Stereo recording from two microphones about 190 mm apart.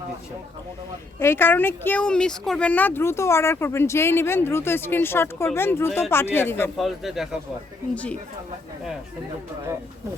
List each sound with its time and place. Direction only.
1.2 s speech: 10° left (ahead or behind)
6.7 s speech: centre (ahead or behind)